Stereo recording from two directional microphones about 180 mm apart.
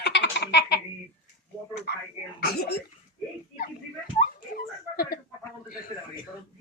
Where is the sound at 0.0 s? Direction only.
70° left (ahead or behind).